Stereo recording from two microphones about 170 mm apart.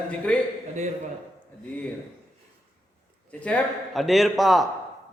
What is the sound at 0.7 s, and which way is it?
Speech, 45° right (ahead or behind).